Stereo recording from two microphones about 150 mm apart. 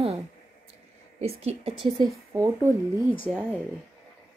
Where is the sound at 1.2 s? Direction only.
45° right (ahead or behind).